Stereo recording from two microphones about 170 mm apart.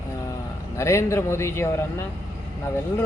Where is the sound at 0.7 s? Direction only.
15° left (ahead or behind).